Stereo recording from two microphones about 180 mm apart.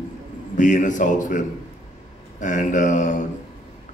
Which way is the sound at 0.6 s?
45° left (ahead or behind).